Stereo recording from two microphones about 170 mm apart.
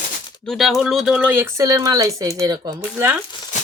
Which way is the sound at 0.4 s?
Centre (ahead or behind).